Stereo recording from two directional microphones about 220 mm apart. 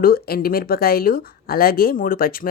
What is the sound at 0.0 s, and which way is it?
Speech, 40° left (ahead or behind).